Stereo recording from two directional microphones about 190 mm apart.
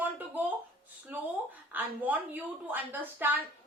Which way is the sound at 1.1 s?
10° right (ahead or behind).